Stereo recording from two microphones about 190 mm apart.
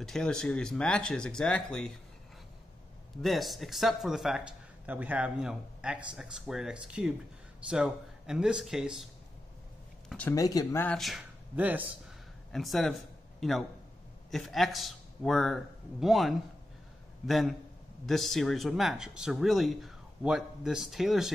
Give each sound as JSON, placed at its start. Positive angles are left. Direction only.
{"t": 0.0, "sound": "speech", "side_deg": 5}
{"t": 3.2, "sound": "speech", "side_deg": 0}
{"t": 10.0, "sound": "speech", "side_deg": 5}
{"t": 10.3, "sound": "speech", "side_deg": 20}
{"t": 11.0, "sound": "a man's voice", "side_deg": 0}